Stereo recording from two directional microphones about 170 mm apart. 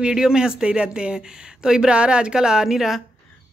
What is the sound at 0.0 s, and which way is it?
Speech, 5° right (ahead or behind).